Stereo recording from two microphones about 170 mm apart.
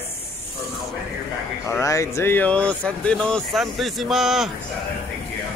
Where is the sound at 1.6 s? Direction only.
15° left (ahead or behind); by 4.5 s centre (ahead or behind).